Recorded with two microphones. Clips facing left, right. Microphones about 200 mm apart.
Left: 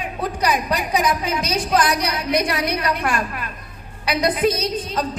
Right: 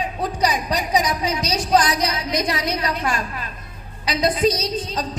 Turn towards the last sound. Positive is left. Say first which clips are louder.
# left 1 dB
turn(degrees=55)  # may be behind; listen again after turning